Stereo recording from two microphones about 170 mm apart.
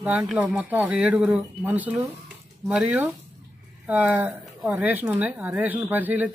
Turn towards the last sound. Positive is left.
turn(degrees=-10)  # may be behind; listen again after turning